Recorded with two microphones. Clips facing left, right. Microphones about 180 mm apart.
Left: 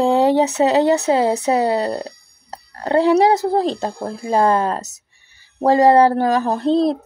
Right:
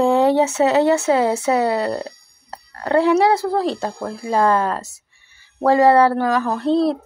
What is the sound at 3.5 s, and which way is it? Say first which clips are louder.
Speech: left 2 dB; 20° left (ahead or behind).